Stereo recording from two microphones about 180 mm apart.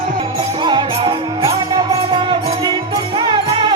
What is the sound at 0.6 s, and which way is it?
Music, 25° right (ahead or behind).